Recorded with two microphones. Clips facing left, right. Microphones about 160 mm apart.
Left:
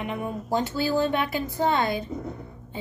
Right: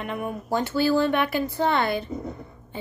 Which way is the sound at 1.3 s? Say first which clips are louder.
Right 1 dB; 15° left (ahead or behind).